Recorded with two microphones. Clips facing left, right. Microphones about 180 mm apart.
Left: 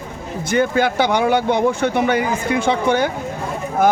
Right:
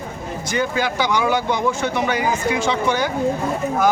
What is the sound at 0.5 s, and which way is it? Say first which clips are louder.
A man's voice: left 5 dB; 55° left (ahead or behind).